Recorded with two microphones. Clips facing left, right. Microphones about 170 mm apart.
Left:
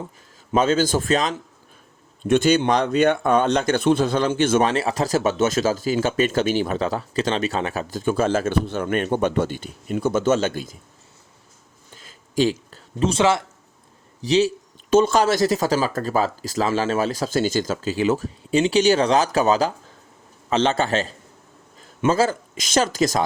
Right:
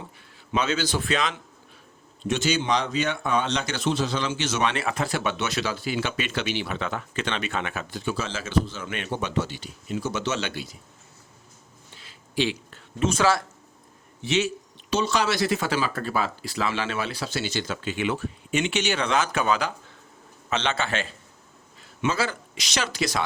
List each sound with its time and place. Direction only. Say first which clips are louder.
0.5 s speech: left 7 dB; 45° left (ahead or behind)
2.2 s speech: left 8 dB; 55° left (ahead or behind)
4.7 s speech: left 6 dB; 35° left (ahead or behind)
11.9 s a sound: left 6 dB; 45° left (ahead or behind); by 13.4 s 25° left (ahead or behind)
14.2 s speech: left 6 dB; 35° left (ahead or behind)
14.8 s speech: left 8 dB; 50° left (ahead or behind)